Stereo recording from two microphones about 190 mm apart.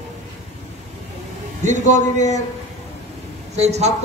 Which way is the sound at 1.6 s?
40° right (ahead or behind).